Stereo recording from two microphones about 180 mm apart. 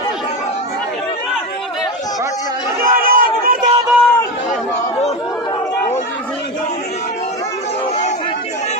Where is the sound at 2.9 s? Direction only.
55° right (ahead or behind).